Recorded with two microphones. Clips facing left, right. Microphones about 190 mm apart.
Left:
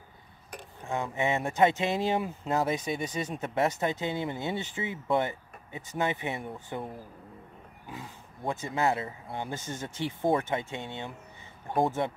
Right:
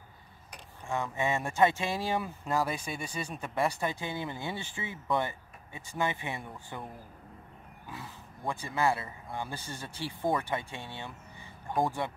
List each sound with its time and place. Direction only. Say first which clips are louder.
0.8 s speech: left 2 dB; 20° left (ahead or behind)
7.9 s speech: left 2 dB; 20° left (ahead or behind)